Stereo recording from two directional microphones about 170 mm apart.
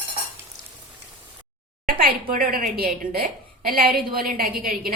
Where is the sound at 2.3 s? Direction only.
55° right (ahead or behind).